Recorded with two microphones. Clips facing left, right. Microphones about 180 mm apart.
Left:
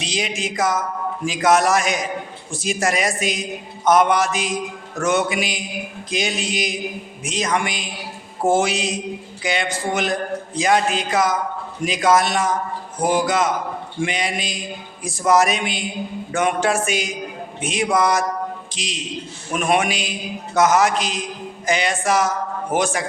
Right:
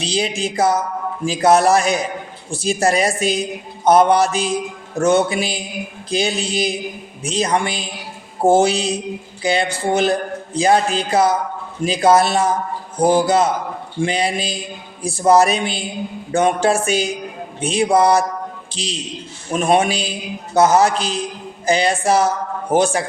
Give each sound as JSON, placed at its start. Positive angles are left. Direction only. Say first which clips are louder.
{"t": 0.0, "sound": "a man's voice", "louder": "right 4 dB", "side_deg": -30}